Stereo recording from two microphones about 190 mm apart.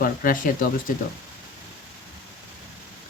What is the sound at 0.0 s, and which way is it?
Speech, 45° left (ahead or behind).